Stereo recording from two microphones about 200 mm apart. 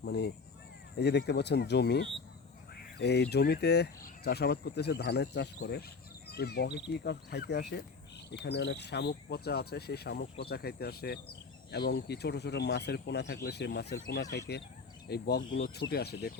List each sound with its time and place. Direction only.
0.0 s speech: 55° left (ahead or behind)